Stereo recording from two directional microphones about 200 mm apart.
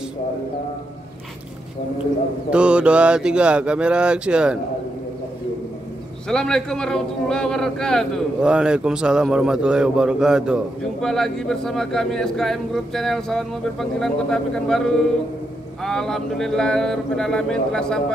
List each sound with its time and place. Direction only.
2.5 s speech: 5° right (ahead or behind)
6.2 s speech: 5° left (ahead or behind)
15.8 s speech: centre (ahead or behind)